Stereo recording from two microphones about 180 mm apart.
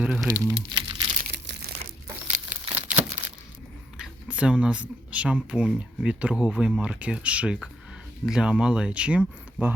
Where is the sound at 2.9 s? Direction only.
45° right (ahead or behind).